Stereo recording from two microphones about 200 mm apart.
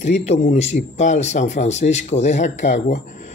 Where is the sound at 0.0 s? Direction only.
35° left (ahead or behind).